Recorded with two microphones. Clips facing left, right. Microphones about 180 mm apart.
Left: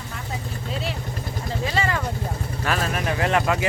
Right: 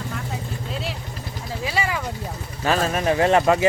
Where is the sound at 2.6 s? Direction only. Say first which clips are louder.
Right 5 dB; 30° right (ahead or behind).